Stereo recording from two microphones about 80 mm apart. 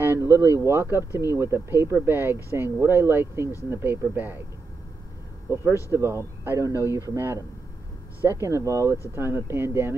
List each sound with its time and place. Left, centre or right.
0.2 s speech: right
5.5 s speech: right
8.2 s speech: right